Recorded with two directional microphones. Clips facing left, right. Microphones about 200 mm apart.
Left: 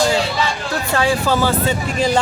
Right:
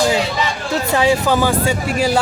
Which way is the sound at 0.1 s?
20° right (ahead or behind).